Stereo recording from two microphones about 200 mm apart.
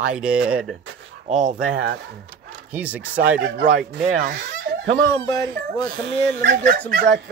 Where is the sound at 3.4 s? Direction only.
45° right (ahead or behind).